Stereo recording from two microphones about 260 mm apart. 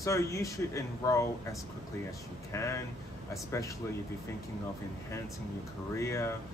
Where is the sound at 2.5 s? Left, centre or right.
Centre.